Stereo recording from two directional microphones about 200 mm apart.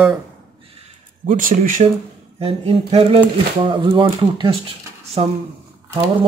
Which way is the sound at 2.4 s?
30° right (ahead or behind).